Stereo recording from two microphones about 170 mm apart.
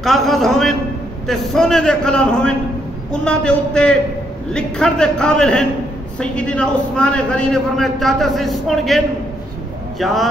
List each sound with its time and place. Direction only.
0.0 s a man's voice: centre (ahead or behind)